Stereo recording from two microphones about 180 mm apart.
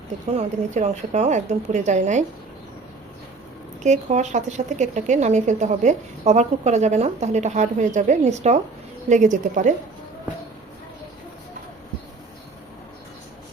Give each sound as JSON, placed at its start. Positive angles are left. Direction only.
{"t": 0.3, "sound": "speech", "side_deg": -40}
{"t": 3.8, "sound": "speech", "side_deg": -40}